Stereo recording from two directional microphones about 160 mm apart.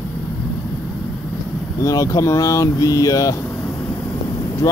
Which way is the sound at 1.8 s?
20° left (ahead or behind).